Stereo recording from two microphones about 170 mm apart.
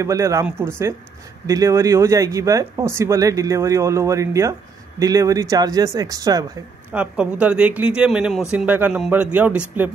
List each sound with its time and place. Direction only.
0.0 s speech: 20° right (ahead or behind)
6.9 s speech: 10° right (ahead or behind)